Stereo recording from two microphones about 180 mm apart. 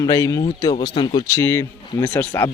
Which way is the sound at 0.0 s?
15° left (ahead or behind).